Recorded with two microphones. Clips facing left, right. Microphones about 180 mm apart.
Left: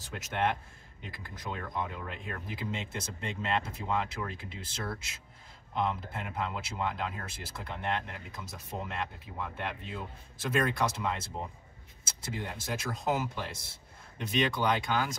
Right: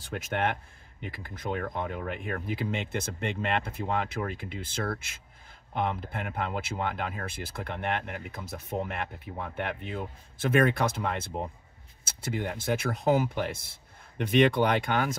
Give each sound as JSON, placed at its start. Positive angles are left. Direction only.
{"t": 0.0, "sound": "speech", "side_deg": -60}
{"t": 12.3, "sound": "speech", "side_deg": -60}